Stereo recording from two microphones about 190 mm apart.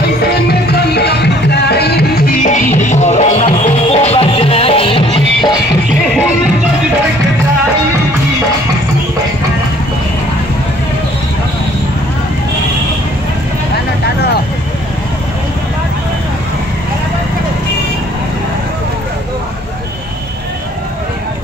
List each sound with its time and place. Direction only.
0.2 s music: 55° left (ahead or behind)
2.4 s music: 40° left (ahead or behind)